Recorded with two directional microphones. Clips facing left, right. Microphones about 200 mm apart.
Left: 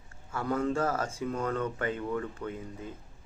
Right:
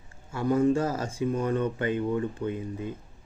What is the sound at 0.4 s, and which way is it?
Speech, 15° right (ahead or behind).